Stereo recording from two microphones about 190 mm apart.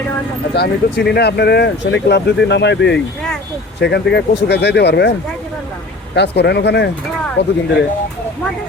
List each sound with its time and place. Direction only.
0.5 s speech: 60° left (ahead or behind)
6.1 s speech: 60° left (ahead or behind)